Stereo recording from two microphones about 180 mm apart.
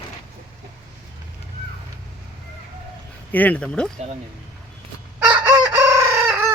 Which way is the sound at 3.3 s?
10° left (ahead or behind).